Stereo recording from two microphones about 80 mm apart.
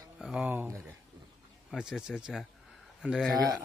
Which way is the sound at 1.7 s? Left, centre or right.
Centre.